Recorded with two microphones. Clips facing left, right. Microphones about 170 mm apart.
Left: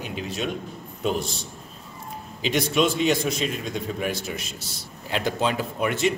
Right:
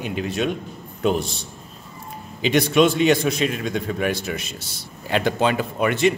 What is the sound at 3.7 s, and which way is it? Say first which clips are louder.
Speech: right 5 dB; 70° right (ahead or behind).